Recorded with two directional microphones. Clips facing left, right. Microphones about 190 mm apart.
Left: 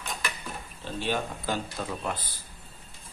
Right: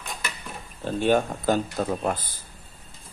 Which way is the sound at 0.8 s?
50° right (ahead or behind).